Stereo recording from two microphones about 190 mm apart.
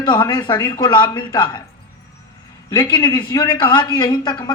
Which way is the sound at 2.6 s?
20° left (ahead or behind).